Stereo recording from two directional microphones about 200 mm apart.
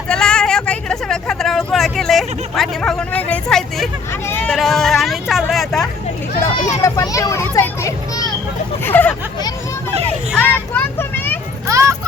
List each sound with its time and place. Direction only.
0.1 s speech: 5° left (ahead or behind)
6.8 s a child's voice: 15° left (ahead or behind)
10.3 s vehicle: 10° left (ahead or behind)
11.7 s a sound: 15° right (ahead or behind)